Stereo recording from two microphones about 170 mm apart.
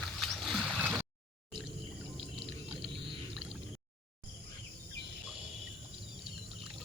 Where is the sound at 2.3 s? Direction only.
30° right (ahead or behind).